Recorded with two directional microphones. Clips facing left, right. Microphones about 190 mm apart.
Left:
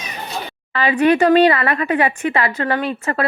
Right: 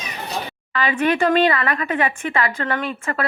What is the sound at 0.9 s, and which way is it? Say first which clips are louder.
A woman's voice: left 5 dB; 40° left (ahead or behind).